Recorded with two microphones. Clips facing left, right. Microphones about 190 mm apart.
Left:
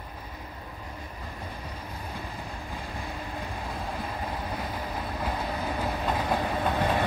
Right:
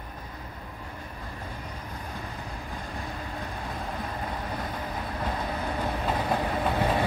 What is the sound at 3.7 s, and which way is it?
Vehicle, 5° left (ahead or behind).